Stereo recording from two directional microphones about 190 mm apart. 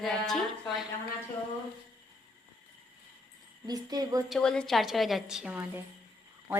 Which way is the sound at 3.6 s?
20° right (ahead or behind).